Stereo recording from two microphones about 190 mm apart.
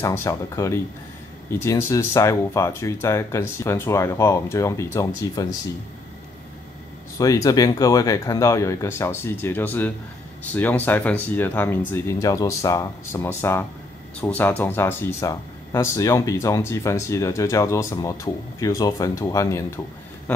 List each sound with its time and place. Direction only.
0.0 s speech: 15° left (ahead or behind)
7.2 s speech: 20° left (ahead or behind)
20.3 s a sound: 10° left (ahead or behind)